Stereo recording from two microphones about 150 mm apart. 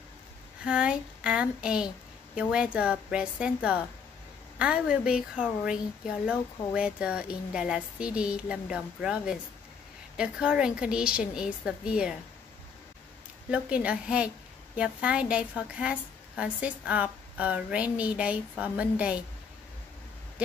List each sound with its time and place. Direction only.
0.7 s a woman's voice: 5° right (ahead or behind)
13.5 s a woman's voice: 10° right (ahead or behind)